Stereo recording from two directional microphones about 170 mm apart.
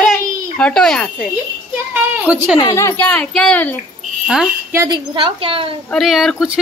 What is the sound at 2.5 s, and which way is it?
Speech, 20° left (ahead or behind).